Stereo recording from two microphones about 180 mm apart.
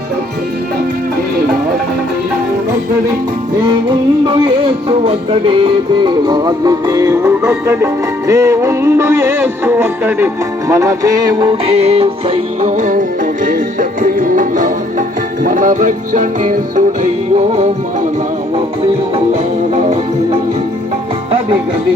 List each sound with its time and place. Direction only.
4.3 s music: 25° right (ahead or behind)
19.7 s music: 40° right (ahead or behind)